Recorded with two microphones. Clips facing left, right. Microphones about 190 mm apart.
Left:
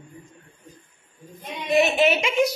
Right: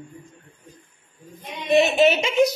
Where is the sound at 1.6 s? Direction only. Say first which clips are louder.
Right 2 dB; 30° right (ahead or behind).